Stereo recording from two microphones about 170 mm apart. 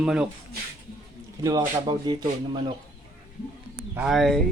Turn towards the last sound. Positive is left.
turn(degrees=0)  # may be behind; listen again after turning